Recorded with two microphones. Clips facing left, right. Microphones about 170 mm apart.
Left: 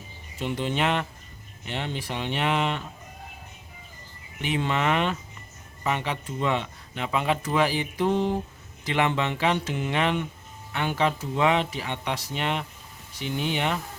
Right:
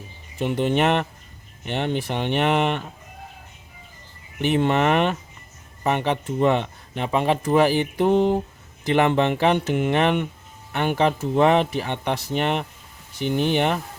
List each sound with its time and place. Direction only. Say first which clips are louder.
0.3 s speech: right 6 dB; 55° right (ahead or behind)
4.4 s speech: right 7 dB; 55° right (ahead or behind)
7.0 s speech: right 5 dB; 35° right (ahead or behind); by 13.7 s 50° right (ahead or behind)